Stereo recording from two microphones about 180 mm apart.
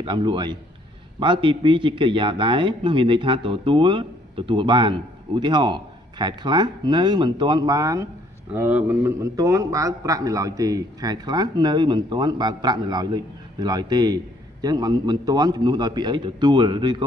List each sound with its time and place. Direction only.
0.0 s a man's voice: 25° right (ahead or behind)